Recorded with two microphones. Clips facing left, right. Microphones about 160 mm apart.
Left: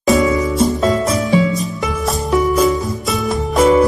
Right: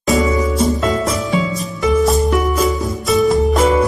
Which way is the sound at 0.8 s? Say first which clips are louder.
Left 2 dB; 25° left (ahead or behind).